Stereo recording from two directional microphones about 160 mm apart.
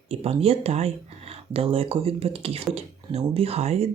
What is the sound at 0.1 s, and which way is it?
Speech, 35° right (ahead or behind).